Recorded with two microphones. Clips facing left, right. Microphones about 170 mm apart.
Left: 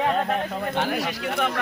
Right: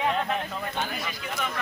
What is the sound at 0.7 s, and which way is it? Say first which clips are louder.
Speech: left 7 dB; 70° left (ahead or behind).